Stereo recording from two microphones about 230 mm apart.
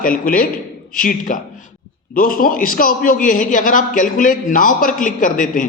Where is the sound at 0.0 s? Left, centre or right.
Left.